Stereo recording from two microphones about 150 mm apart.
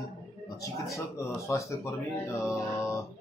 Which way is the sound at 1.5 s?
20° left (ahead or behind).